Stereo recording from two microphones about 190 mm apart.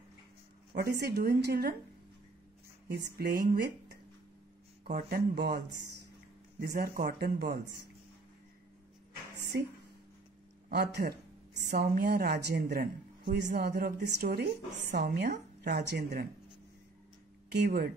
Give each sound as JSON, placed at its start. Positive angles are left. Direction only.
{"t": 0.7, "sound": "a woman's voice", "side_deg": -55}
{"t": 2.9, "sound": "a woman's voice", "side_deg": -55}
{"t": 4.9, "sound": "speech", "side_deg": -55}
{"t": 6.6, "sound": "speech", "side_deg": -50}
{"t": 10.7, "sound": "a woman's voice", "side_deg": -60}
{"t": 17.5, "sound": "a woman's voice", "side_deg": -55}